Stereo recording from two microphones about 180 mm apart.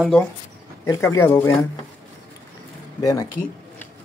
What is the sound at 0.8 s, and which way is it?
Speech, 20° left (ahead or behind).